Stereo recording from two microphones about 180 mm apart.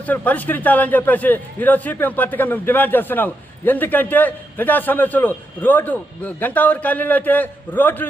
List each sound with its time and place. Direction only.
0.0 s a man's voice: 10° left (ahead or behind)